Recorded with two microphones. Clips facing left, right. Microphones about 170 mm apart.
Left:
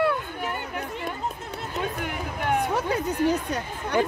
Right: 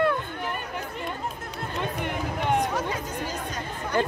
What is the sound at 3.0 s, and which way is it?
Chatter, 65° left (ahead or behind).